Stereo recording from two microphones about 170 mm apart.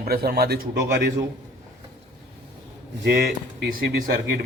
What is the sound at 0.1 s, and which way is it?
A man's voice, 65° right (ahead or behind).